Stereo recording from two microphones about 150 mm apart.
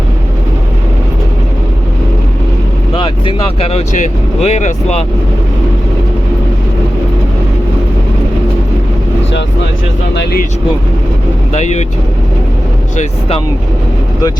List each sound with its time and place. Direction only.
2.9 s speech: 35° left (ahead or behind)
3.9 s speech: 55° left (ahead or behind)
11.5 s speech: 50° left (ahead or behind)
13.0 s speech: 45° left (ahead or behind)